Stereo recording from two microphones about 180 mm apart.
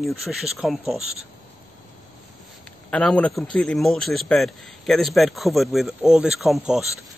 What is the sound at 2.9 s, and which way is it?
Speech, 5° left (ahead or behind).